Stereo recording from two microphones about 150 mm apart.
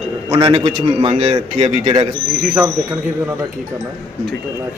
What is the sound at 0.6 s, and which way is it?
A man's voice, 40° right (ahead or behind).